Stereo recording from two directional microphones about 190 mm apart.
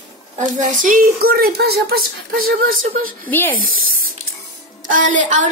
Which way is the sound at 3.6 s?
50° right (ahead or behind).